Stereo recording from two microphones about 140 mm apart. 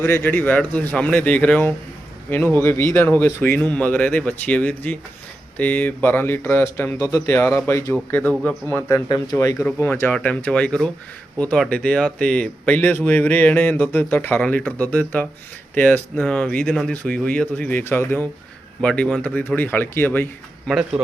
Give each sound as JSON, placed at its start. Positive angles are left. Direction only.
{"t": 0.0, "sound": "speech", "side_deg": 15}
{"t": 9.0, "sound": "speech", "side_deg": 30}
{"t": 9.6, "sound": "speech", "side_deg": 10}
{"t": 20.7, "sound": "speech", "side_deg": -5}